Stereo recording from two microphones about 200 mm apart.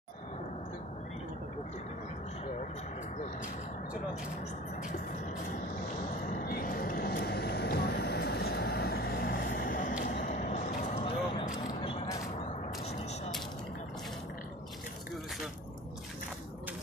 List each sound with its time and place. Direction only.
6.3 s vehicle: 45° left (ahead or behind)